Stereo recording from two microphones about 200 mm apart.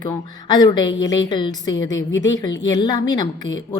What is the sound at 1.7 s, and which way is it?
Speech, 75° left (ahead or behind).